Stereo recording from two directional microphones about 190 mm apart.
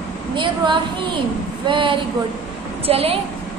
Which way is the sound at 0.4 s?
25° right (ahead or behind).